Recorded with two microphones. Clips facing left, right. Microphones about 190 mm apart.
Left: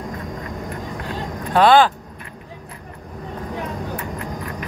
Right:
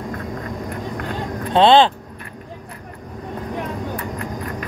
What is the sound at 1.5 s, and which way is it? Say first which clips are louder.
Speech: right 1 dB; 25° right (ahead or behind).